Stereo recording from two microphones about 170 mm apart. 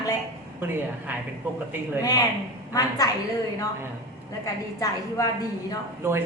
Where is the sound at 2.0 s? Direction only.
20° left (ahead or behind).